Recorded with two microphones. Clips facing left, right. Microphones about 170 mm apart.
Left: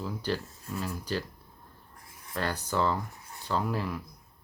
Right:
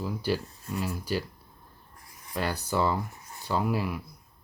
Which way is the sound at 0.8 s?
10° right (ahead or behind).